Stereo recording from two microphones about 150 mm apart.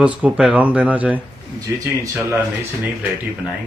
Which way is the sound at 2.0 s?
20° right (ahead or behind).